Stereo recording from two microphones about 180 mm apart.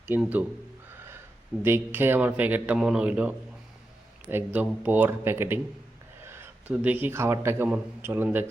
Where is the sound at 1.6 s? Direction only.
10° right (ahead or behind).